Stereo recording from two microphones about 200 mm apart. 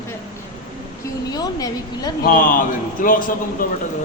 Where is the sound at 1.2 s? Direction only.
20° left (ahead or behind).